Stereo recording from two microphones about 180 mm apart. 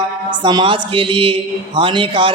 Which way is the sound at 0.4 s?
25° right (ahead or behind).